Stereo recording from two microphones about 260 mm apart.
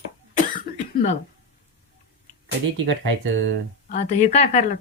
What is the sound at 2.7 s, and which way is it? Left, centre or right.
Speech, right.